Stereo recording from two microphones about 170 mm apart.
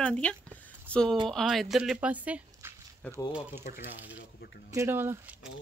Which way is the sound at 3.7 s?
45° left (ahead or behind).